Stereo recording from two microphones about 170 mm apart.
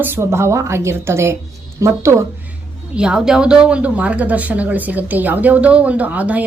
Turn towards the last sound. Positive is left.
turn(degrees=-10)  # may be behind; listen again after turning